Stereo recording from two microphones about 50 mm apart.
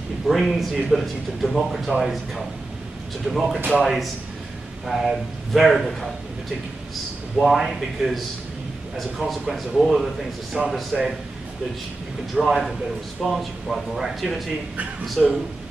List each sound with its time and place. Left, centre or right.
0.3 s speech: centre
7.3 s speech: centre
12.4 s speech: centre